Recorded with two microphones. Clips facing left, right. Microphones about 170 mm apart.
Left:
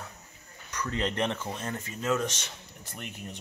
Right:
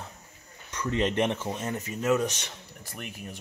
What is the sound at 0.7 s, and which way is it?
Speech, 25° right (ahead or behind).